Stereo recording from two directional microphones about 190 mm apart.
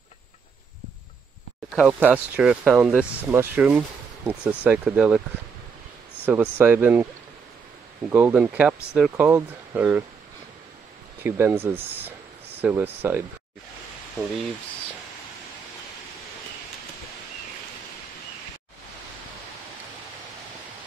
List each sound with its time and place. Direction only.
1.8 s speech: 10° right (ahead or behind)
6.2 s speech: 10° right (ahead or behind)
8.1 s speech: 10° right (ahead or behind)
11.2 s speech: 10° right (ahead or behind)